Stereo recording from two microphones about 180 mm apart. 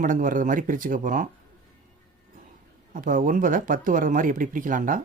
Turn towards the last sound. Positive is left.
turn(degrees=-50)  # may be behind; listen again after turning